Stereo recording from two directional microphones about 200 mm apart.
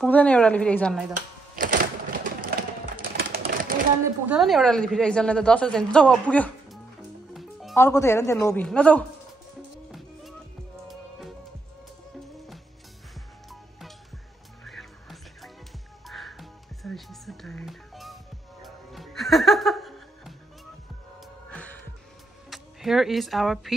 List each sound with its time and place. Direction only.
0.0 s a woman's voice: 5° left (ahead or behind)
1.5 s typewriter: 45° right (ahead or behind)
2.4 s a sound: 50° right (ahead or behind)
4.0 s a woman's voice: 5° right (ahead or behind)
9.8 s music: centre (ahead or behind)
13.5 s music: centre (ahead or behind)
21.5 s music: 5° left (ahead or behind)